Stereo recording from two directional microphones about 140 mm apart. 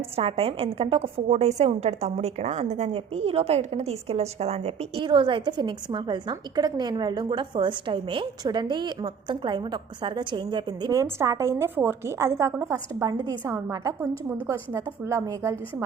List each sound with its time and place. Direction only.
0.2 s a woman's voice: 45° right (ahead or behind)
11.2 s a woman's voice: 20° right (ahead or behind)